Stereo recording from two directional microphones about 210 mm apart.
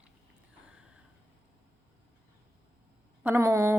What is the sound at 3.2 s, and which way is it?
Speech, 10° right (ahead or behind).